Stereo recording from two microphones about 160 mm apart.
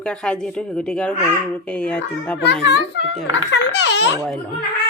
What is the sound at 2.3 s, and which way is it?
A child's voice, 90° left.